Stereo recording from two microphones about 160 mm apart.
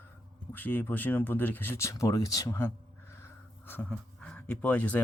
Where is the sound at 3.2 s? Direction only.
15° left (ahead or behind).